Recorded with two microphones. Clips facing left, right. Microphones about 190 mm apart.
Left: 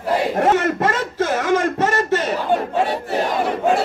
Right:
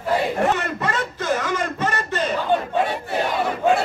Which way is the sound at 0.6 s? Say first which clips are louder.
Left 5 dB; 50° left (ahead or behind).